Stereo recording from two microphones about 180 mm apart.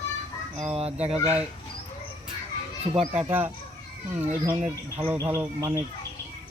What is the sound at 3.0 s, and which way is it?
Speech, 10° right (ahead or behind).